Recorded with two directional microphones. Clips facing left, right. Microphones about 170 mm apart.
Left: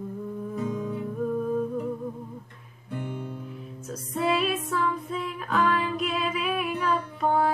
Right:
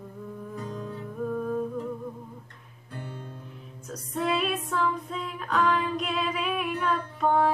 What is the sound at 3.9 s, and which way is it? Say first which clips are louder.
Music: left 2 dB; centre (ahead or behind).